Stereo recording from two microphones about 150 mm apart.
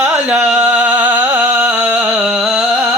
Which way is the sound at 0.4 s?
10° right (ahead or behind).